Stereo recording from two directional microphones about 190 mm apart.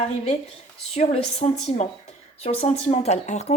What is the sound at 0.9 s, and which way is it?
Speech, 35° left (ahead or behind).